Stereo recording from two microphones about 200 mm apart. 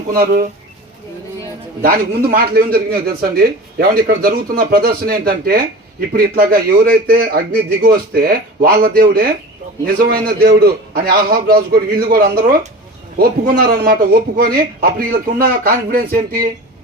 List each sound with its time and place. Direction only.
0.1 s a man's voice: 50° right (ahead or behind)
1.8 s a man's voice: 50° right (ahead or behind)